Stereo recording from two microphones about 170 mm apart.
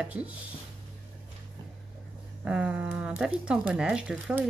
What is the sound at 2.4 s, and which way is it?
Speech, 5° right (ahead or behind).